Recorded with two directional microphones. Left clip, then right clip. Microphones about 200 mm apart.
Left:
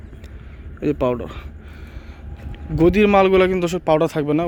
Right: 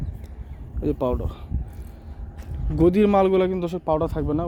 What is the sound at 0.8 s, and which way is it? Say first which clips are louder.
Speech: left 4 dB; 5° right (ahead or behind).